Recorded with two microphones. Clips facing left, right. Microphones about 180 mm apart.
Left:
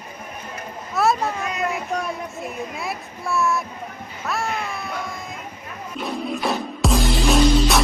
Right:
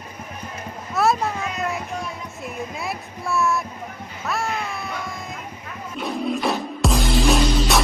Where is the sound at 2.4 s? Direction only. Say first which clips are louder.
Left 1 dB; centre (ahead or behind).